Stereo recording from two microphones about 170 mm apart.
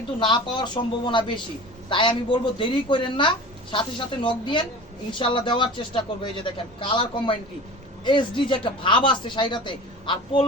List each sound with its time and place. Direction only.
0.2 s speech: 30° left (ahead or behind)